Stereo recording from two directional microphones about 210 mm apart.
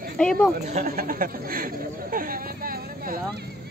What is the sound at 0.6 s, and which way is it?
Speech, 40° right (ahead or behind).